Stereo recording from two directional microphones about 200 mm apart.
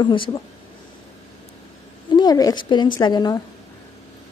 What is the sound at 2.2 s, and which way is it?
A woman's voice, 20° left (ahead or behind).